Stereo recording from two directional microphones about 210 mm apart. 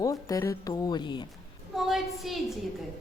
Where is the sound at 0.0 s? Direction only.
15° left (ahead or behind).